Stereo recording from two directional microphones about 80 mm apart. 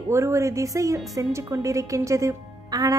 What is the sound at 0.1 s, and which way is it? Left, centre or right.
A woman's voice, right.